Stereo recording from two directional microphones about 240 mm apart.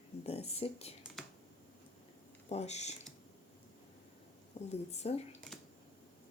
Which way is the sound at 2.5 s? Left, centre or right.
Left.